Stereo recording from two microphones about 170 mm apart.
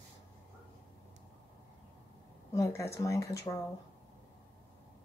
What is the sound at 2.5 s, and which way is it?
Speech, 15° left (ahead or behind).